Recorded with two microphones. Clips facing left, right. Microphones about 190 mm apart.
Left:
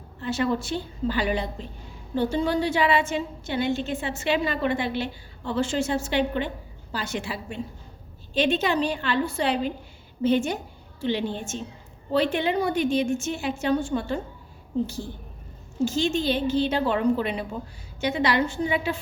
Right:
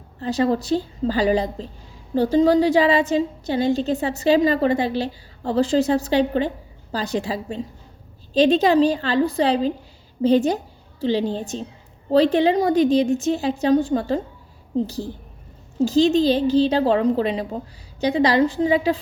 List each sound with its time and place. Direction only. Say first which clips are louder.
0.2 s a woman's voice: right 5 dB; 35° right (ahead or behind)
8.4 s a woman's voice: right 8 dB; 35° right (ahead or behind)